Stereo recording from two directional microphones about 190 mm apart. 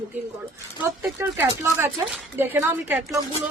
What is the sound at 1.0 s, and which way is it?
A woman's voice, 10° right (ahead or behind).